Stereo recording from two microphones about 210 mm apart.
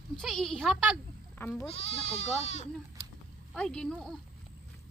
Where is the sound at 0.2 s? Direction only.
Centre (ahead or behind).